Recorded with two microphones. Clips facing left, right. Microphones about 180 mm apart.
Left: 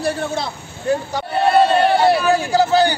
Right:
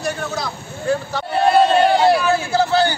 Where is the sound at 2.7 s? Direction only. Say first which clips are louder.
Left 2 dB; 15° left (ahead or behind).